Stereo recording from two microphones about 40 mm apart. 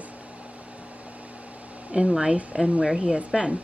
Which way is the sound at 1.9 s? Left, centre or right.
Right.